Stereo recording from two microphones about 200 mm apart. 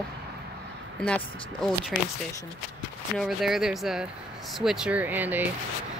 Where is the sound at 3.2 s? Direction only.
Centre (ahead or behind).